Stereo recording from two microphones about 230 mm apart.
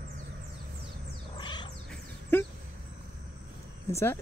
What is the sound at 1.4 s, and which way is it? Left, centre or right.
Cat, centre.